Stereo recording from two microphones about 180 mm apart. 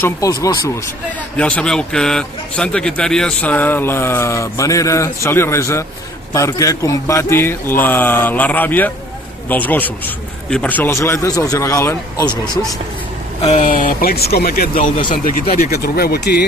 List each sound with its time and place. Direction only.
0.0 s a man's voice: 20° left (ahead or behind)
1.4 s a man's voice: 5° left (ahead or behind)
13.4 s speech: 40° left (ahead or behind); by 14.7 s 55° left (ahead or behind)
14.8 s speech: 30° left (ahead or behind)
15.2 s speech: 55° left (ahead or behind)